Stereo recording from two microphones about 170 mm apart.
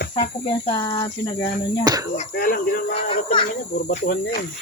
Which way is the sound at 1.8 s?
25° right (ahead or behind).